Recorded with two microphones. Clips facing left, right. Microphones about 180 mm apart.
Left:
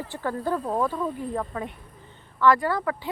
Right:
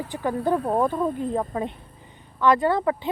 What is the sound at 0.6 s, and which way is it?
Speech, 60° right (ahead or behind).